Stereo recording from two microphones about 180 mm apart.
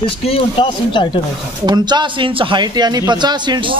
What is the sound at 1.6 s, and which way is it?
A man's voice, 25° right (ahead or behind).